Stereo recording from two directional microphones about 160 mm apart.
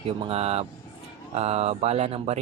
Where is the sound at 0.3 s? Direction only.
40° right (ahead or behind).